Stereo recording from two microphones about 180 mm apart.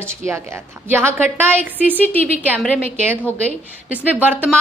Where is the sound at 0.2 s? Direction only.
15° right (ahead or behind).